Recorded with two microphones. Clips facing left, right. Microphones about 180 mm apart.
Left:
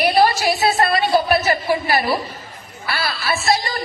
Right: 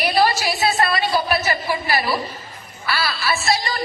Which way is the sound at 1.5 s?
35° left (ahead or behind).